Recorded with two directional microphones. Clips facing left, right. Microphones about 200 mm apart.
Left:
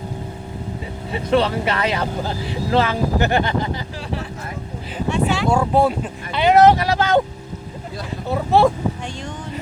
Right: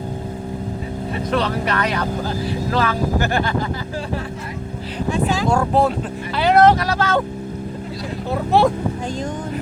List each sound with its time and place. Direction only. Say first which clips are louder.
1.3 s speech: left 3 dB; 25° left (ahead or behind)
5.5 s speech: left 1 dB; 5° left (ahead or behind)
8.3 s speech: left 1 dB; centre (ahead or behind)